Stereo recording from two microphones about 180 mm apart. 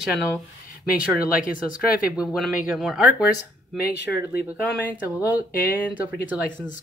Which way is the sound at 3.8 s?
60° left (ahead or behind).